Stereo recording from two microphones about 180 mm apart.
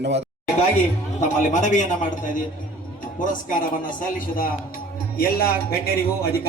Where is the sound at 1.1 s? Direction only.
40° left (ahead or behind).